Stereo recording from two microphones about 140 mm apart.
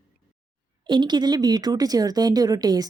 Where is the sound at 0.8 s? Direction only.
35° right (ahead or behind).